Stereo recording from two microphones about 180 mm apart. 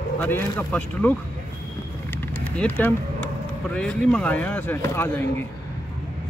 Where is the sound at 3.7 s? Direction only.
5° left (ahead or behind).